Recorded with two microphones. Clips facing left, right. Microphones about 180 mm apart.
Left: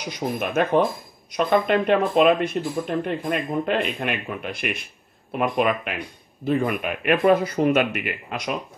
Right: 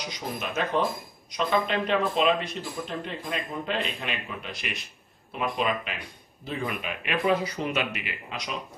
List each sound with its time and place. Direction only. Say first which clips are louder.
0.4 s speech: left 7 dB; 55° left (ahead or behind)